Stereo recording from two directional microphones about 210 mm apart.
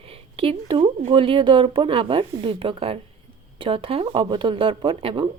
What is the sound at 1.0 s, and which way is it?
Speech, 25° right (ahead or behind).